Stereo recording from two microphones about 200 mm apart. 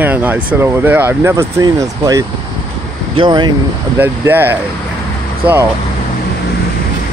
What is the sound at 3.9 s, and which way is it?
Speech, 10° right (ahead or behind).